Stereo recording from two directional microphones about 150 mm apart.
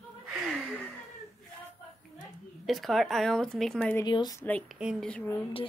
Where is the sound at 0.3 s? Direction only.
Centre (ahead or behind).